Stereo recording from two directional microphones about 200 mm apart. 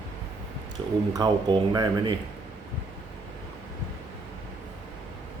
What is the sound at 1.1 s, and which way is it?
Speech, 20° right (ahead or behind).